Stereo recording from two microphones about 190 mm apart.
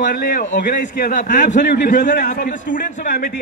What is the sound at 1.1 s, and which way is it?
Speech, 40° left (ahead or behind).